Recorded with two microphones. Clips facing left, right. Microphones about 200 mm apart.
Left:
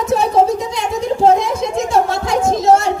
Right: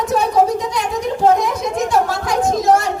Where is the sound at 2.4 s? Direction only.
25° left (ahead or behind).